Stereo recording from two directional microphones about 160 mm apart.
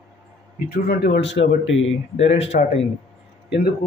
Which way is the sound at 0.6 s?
70° left (ahead or behind).